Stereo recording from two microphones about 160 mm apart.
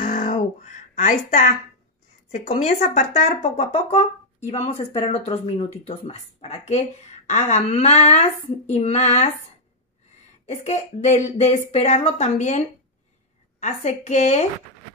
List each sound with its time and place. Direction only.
0.0 s music: 50° left (ahead or behind)
2.3 s speech: 50° left (ahead or behind)
10.4 s speech: 45° left (ahead or behind)